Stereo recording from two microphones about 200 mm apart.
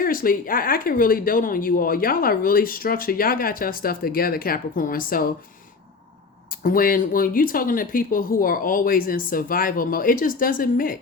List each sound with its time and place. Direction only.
0.0 s speech: 45° left (ahead or behind)
6.6 s speech: 45° left (ahead or behind)